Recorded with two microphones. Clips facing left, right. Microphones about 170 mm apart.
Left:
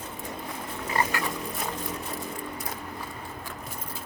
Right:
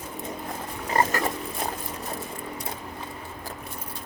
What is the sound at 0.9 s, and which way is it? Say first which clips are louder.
Pig: right 4 dB; 40° right (ahead or behind).